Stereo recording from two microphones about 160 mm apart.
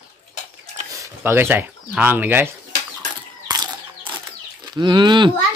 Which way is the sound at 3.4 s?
25° right (ahead or behind).